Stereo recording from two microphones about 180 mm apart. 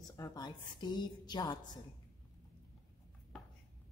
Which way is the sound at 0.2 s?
25° left (ahead or behind).